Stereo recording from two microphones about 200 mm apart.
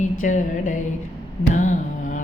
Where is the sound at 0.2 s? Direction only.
40° left (ahead or behind).